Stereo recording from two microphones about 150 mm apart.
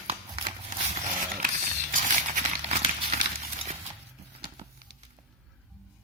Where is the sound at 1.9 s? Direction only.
55° right (ahead or behind).